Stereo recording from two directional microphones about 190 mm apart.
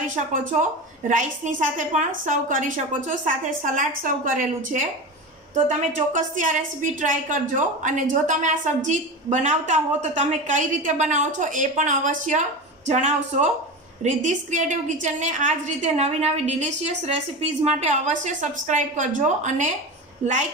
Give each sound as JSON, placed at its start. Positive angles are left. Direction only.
{"t": 0.0, "sound": "a woman's voice", "side_deg": -40}
{"t": 5.5, "sound": "a woman's voice", "side_deg": -40}